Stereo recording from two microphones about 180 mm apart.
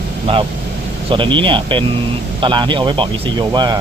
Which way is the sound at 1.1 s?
30° right (ahead or behind).